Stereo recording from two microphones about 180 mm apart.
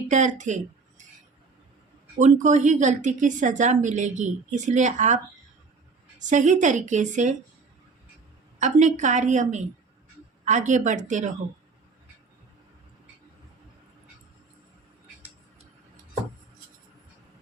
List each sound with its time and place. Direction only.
0.1 s speech: 40° right (ahead or behind)
2.1 s a woman's voice: 45° right (ahead or behind)
8.5 s a woman's voice: 40° right (ahead or behind)